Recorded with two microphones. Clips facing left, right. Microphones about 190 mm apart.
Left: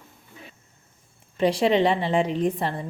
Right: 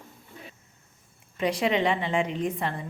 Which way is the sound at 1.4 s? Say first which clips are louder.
Left 5 dB; 30° left (ahead or behind).